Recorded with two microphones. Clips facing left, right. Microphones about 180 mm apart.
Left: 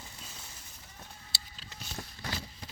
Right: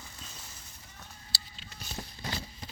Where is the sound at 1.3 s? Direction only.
20° left (ahead or behind).